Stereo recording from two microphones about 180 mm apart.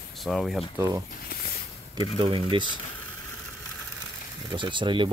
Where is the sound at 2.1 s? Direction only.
30° right (ahead or behind).